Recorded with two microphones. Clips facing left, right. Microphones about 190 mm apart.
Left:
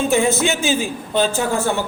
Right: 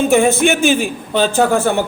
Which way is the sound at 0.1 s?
55° right (ahead or behind).